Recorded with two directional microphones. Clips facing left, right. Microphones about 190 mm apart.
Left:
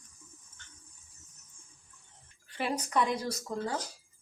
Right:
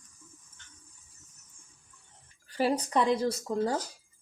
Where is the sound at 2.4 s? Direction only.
35° right (ahead or behind).